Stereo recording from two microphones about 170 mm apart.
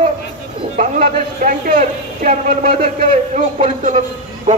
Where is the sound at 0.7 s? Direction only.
50° right (ahead or behind).